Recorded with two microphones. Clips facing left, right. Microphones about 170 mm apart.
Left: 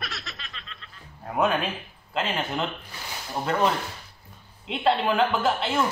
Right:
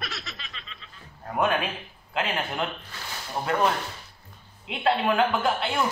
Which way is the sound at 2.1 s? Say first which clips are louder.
Left 1 dB; centre (ahead or behind).